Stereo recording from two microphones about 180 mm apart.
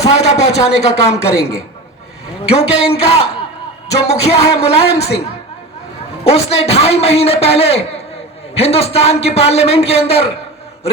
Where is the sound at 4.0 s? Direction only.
35° left (ahead or behind).